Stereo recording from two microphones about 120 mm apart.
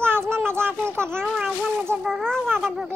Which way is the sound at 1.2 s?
Centre (ahead or behind).